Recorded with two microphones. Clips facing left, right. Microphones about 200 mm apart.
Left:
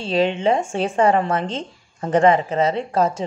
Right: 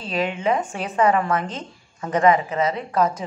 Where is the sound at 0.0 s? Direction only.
30° left (ahead or behind).